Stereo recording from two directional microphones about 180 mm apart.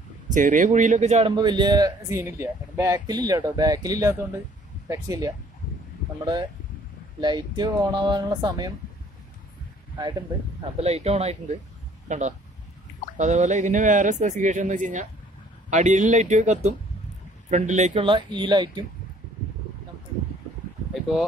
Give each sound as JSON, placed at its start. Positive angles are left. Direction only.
{"t": 0.3, "sound": "a man's voice", "side_deg": -45}
{"t": 1.3, "sound": "speech", "side_deg": -25}
{"t": 7.2, "sound": "speech", "side_deg": -25}
{"t": 10.8, "sound": "a man's voice", "side_deg": -35}
{"t": 20.9, "sound": "a sound", "side_deg": 0}